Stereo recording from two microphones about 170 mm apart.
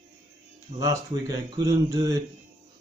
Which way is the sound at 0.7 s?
40° right (ahead or behind).